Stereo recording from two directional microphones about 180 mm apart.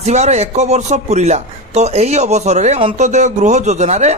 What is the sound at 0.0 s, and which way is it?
A man's voice, 40° right (ahead or behind).